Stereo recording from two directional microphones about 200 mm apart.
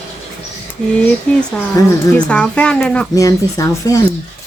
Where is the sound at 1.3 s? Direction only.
5° left (ahead or behind).